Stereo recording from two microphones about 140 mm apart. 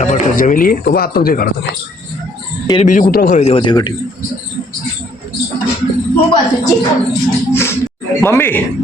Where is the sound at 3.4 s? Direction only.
45° left (ahead or behind).